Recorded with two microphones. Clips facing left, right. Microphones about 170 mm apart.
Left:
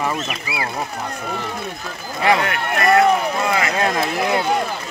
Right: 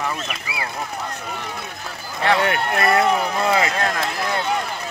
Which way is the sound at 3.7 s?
15° left (ahead or behind).